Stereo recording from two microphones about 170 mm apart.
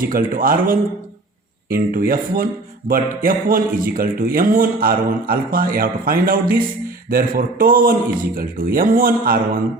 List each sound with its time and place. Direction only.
0.0 s speech: 55° right (ahead or behind)